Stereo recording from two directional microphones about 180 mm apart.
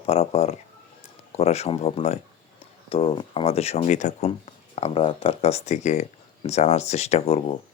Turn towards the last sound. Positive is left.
turn(degrees=35)  # may be behind; listen again after turning